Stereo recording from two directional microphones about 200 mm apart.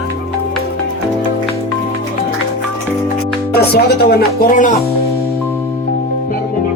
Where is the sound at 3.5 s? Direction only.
55° left (ahead or behind).